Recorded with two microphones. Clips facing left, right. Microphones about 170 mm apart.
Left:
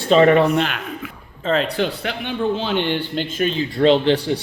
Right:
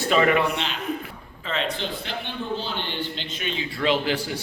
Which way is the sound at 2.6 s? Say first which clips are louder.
Left 9 dB; 75° left (ahead or behind).